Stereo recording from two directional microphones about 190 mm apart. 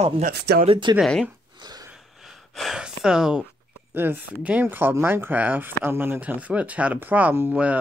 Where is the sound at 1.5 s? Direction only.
20° right (ahead or behind).